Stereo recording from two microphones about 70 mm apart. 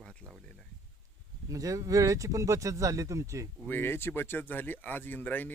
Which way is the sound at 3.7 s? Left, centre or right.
Left.